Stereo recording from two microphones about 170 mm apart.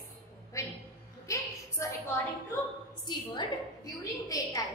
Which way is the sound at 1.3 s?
20° left (ahead or behind).